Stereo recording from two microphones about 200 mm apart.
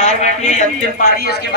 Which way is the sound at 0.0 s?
35° left (ahead or behind).